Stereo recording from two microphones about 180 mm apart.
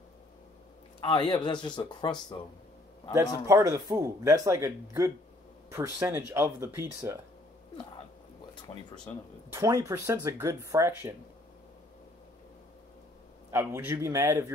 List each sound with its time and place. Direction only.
1.0 s speech: 30° left (ahead or behind)
3.4 s speech: 15° right (ahead or behind)
8.7 s speech: 35° left (ahead or behind)
9.5 s speech: 15° right (ahead or behind)
13.5 s speech: 15° right (ahead or behind)